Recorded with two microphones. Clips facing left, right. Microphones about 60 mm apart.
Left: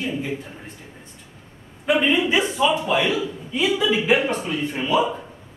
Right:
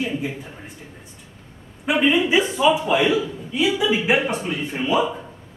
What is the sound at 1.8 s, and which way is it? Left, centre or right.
A man's voice, centre.